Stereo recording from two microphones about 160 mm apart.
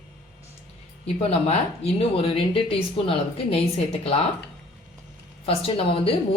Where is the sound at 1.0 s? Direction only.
40° left (ahead or behind).